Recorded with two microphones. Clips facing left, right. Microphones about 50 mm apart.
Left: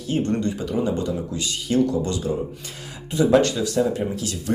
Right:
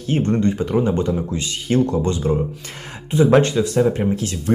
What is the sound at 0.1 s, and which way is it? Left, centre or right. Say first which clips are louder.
Speech: right 4 dB; right.